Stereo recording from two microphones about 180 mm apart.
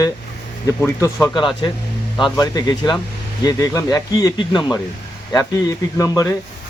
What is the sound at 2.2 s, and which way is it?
Speech, 20° left (ahead or behind).